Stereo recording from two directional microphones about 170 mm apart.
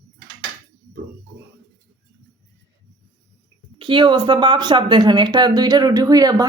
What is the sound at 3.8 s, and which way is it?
Speech, 30° right (ahead or behind).